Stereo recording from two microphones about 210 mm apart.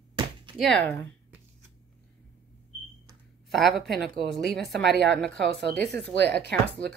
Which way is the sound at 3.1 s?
Centre (ahead or behind).